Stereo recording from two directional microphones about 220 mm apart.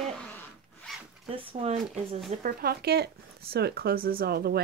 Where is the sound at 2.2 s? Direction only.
40° right (ahead or behind).